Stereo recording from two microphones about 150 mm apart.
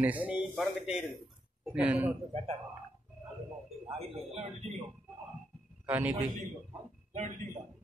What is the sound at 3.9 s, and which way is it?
Speech, 45° right (ahead or behind).